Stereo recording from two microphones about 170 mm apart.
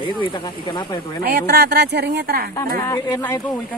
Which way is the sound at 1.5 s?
70° right (ahead or behind).